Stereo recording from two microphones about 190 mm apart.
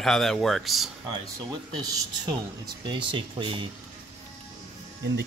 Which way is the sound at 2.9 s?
25° right (ahead or behind).